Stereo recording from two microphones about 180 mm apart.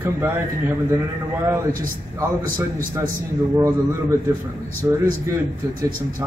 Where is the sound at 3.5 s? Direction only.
15° right (ahead or behind).